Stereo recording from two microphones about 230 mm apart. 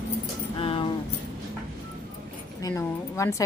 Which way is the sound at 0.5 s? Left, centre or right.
Left.